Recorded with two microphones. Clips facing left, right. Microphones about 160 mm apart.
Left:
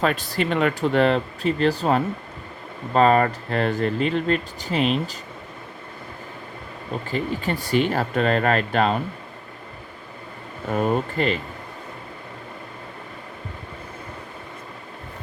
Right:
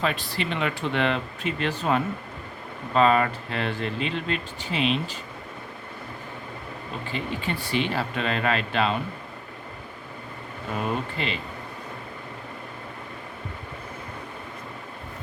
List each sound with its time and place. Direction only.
0.0 s speech: 45° left (ahead or behind)
7.1 s speech: 40° left (ahead or behind)
10.7 s speech: 45° left (ahead or behind)